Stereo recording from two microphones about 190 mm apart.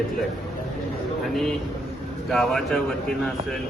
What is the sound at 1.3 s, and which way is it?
A man's voice, centre (ahead or behind).